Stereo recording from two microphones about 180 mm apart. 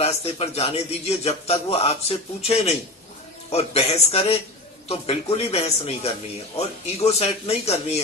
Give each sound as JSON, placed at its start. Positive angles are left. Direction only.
{"t": 0.0, "sound": "speech", "side_deg": 35}